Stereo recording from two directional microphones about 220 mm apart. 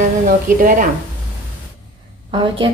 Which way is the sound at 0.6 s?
40° right (ahead or behind).